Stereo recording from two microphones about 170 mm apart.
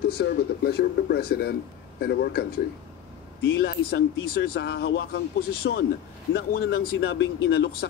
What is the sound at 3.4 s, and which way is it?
Speech, 70° left (ahead or behind).